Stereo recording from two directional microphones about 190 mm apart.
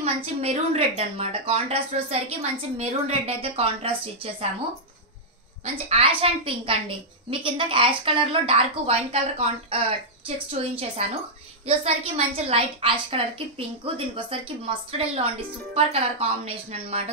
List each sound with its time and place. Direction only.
0.0 s a woman's voice: 30° right (ahead or behind)
5.9 s a woman's voice: 30° right (ahead or behind)